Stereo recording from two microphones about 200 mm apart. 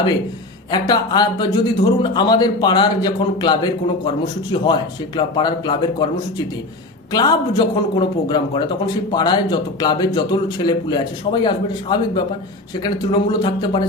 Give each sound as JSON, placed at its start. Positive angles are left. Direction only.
{"t": 0.7, "sound": "speech", "side_deg": 20}
{"t": 7.1, "sound": "speech", "side_deg": 20}